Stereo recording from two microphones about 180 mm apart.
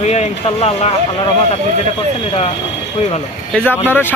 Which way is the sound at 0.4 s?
35° left (ahead or behind).